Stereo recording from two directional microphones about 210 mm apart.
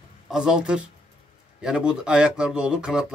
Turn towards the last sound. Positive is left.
turn(degrees=-5)  # may be behind; listen again after turning